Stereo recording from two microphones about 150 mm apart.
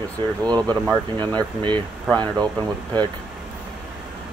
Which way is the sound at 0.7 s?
10° left (ahead or behind).